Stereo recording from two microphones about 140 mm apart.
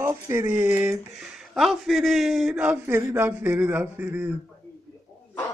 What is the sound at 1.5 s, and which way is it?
A man's voice, centre (ahead or behind).